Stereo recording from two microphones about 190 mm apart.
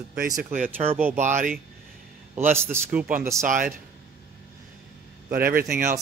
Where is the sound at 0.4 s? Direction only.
45° right (ahead or behind).